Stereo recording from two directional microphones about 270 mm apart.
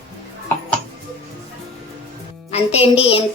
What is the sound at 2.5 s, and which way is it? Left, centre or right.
Speech, left.